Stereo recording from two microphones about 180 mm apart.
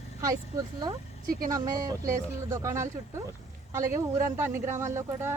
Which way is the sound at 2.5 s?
15° right (ahead or behind).